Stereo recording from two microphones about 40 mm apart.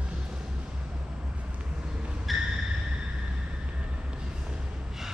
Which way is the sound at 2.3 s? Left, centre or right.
Centre.